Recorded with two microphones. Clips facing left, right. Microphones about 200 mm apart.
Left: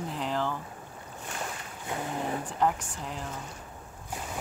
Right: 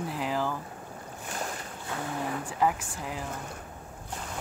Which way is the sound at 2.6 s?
5° right (ahead or behind).